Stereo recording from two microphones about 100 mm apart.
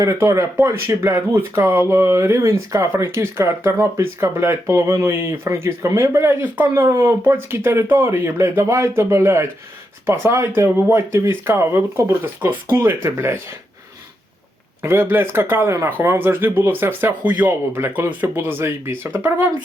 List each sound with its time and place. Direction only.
0.0 s speech: 30° right (ahead or behind)
14.8 s speech: 20° right (ahead or behind)